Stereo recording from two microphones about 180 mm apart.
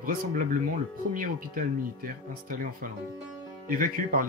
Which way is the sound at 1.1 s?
50° right (ahead or behind).